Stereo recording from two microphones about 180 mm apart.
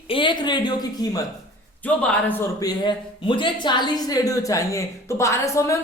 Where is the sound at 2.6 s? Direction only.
25° left (ahead or behind).